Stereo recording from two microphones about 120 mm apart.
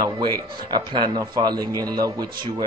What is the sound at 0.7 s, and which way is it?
Speech, 35° right (ahead or behind).